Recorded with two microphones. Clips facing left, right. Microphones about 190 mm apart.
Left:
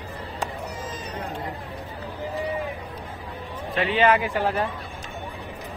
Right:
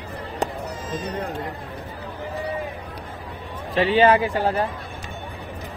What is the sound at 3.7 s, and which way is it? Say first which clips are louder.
Speech: right 4 dB; 35° right (ahead or behind).